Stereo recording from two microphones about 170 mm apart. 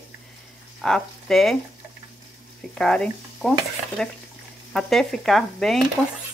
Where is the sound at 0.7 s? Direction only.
5° left (ahead or behind).